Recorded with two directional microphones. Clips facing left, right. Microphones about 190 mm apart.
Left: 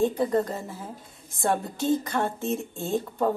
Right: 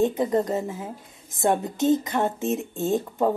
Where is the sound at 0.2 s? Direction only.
20° right (ahead or behind).